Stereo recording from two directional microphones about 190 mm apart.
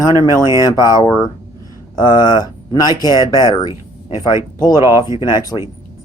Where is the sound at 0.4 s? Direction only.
15° right (ahead or behind).